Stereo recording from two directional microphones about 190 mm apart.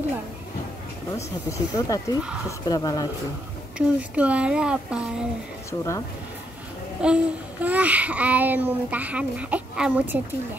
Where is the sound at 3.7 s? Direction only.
5° right (ahead or behind).